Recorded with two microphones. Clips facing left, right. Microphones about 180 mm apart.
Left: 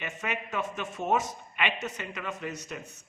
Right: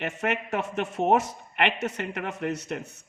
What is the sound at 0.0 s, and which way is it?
A man's voice, 65° right (ahead or behind).